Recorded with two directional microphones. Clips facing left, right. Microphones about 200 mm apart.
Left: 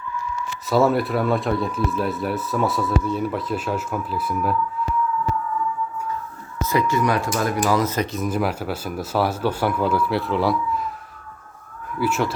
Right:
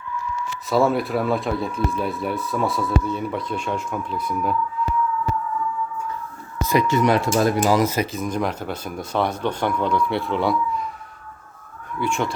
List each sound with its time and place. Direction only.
0.7 s speech: centre (ahead or behind)
6.6 s speech: 15° right (ahead or behind)
8.1 s speech: 5° left (ahead or behind)
11.9 s speech: 5° left (ahead or behind)